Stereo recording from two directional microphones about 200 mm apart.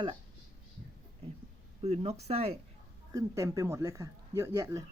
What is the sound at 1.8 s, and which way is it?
Speech, 30° right (ahead or behind).